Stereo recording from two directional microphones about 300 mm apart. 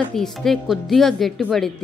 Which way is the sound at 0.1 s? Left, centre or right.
Centre.